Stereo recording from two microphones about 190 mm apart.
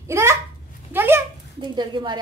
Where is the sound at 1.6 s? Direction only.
25° right (ahead or behind).